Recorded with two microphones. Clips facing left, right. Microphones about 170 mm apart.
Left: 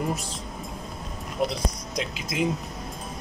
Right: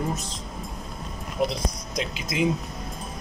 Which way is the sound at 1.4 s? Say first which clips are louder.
Right 1 dB; 5° left (ahead or behind).